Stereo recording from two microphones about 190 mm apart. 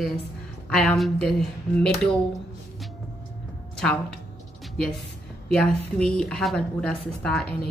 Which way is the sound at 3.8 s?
5° left (ahead or behind).